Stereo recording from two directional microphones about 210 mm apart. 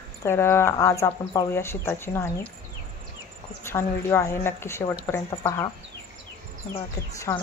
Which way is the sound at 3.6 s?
10° left (ahead or behind).